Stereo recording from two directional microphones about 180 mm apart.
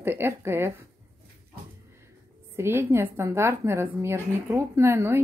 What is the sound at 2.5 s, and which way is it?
A woman's voice, 15° right (ahead or behind).